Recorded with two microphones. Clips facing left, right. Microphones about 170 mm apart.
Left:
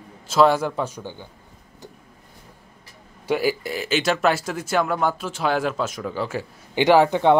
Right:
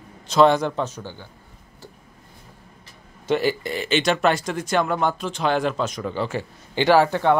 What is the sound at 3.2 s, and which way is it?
Speech, 5° left (ahead or behind).